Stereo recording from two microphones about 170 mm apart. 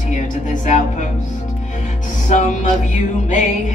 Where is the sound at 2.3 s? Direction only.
50° left (ahead or behind).